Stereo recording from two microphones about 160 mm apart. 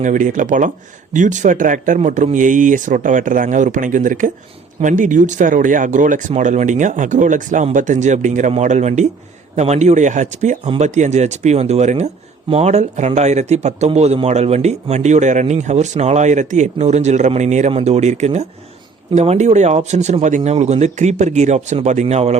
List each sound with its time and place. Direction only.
0.0 s speech: 50° right (ahead or behind)